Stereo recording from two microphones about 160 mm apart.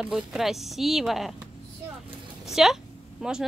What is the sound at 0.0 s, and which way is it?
Speech, 5° right (ahead or behind).